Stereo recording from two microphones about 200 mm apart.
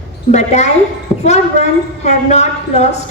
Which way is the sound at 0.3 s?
35° left (ahead or behind).